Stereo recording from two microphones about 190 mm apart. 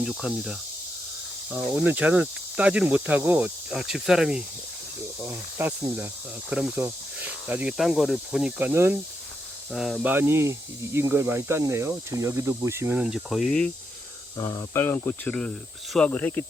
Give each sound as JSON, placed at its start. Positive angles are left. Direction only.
{"t": 0.0, "sound": "insect", "side_deg": -5}
{"t": 1.5, "sound": "speech", "side_deg": -10}
{"t": 14.3, "sound": "speech", "side_deg": 15}